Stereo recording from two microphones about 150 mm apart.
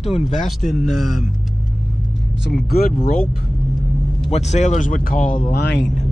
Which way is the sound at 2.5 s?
85° left.